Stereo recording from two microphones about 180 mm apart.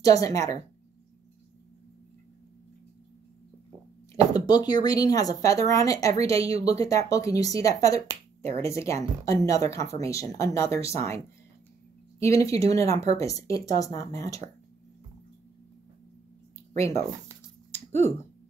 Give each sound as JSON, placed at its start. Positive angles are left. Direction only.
{"t": 0.0, "sound": "speech", "side_deg": 20}
{"t": 4.1, "sound": "speech", "side_deg": 20}
{"t": 6.1, "sound": "speech", "side_deg": -35}
{"t": 6.4, "sound": "a woman's voice", "side_deg": 20}
{"t": 10.7, "sound": "speech", "side_deg": -35}
{"t": 11.0, "sound": "a woman's voice", "side_deg": 15}